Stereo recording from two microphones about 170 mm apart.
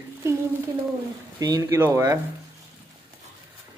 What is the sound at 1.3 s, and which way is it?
Speech, 20° right (ahead or behind).